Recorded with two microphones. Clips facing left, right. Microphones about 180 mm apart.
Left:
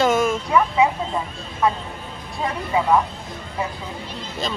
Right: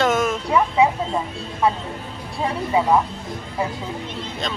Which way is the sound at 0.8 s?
30° right (ahead or behind).